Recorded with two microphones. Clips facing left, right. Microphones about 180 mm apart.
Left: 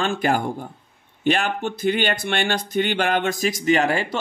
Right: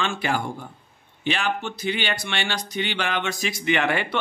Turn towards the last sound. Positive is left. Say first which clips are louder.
# left 4 dB
turn(degrees=35)  # may be behind; listen again after turning